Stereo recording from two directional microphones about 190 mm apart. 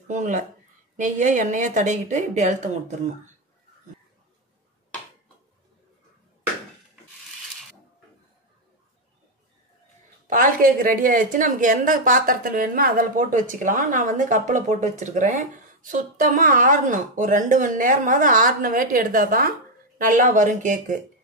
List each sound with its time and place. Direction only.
0.1 s a woman's voice: 40° right (ahead or behind)
10.2 s a woman's voice: 45° right (ahead or behind)